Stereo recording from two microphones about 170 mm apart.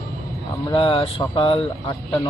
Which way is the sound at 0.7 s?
35° left (ahead or behind).